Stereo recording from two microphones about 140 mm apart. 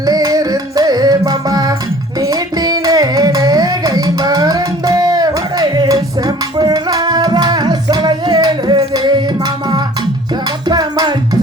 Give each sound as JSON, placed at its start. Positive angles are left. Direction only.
{"t": 0.0, "sound": "music", "side_deg": -25}
{"t": 2.2, "sound": "carnatic music", "side_deg": -25}
{"t": 10.7, "sound": "music", "side_deg": -30}